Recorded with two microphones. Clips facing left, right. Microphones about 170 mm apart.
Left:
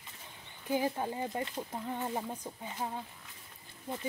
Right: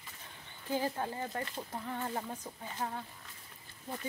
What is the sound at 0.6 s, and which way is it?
Speech, 15° left (ahead or behind).